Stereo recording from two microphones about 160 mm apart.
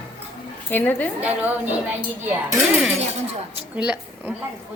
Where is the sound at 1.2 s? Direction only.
10° right (ahead or behind).